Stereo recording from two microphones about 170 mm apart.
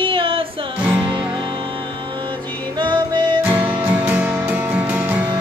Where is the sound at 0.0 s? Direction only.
30° right (ahead or behind).